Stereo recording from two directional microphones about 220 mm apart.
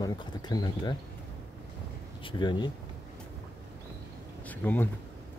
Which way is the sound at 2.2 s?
20° left (ahead or behind).